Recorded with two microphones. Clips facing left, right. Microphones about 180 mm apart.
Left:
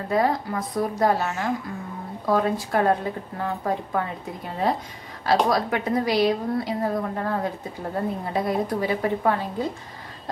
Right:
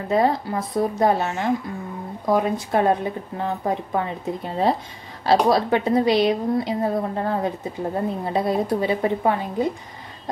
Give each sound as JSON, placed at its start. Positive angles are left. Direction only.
{"t": 0.1, "sound": "a woman's voice", "side_deg": -25}
{"t": 5.2, "sound": "a woman's voice", "side_deg": -30}